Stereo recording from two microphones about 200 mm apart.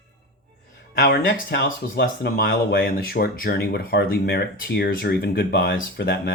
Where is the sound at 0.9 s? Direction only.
50° left (ahead or behind).